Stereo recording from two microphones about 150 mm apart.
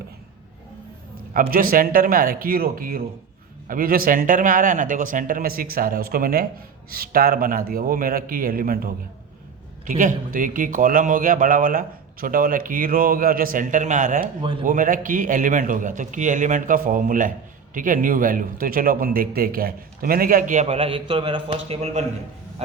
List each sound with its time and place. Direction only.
1.3 s speech: 70° right (ahead or behind)
9.8 s a man's voice: 60° right (ahead or behind); by 22.0 s 45° right (ahead or behind)